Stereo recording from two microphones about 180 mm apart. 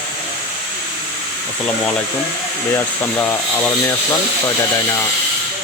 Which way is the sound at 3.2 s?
15° left (ahead or behind).